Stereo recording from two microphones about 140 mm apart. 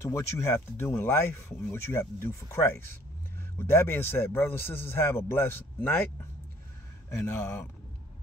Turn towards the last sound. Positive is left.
turn(degrees=20)  # may be behind; listen again after turning